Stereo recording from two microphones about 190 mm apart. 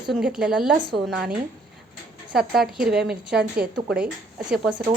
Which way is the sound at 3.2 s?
60° right (ahead or behind).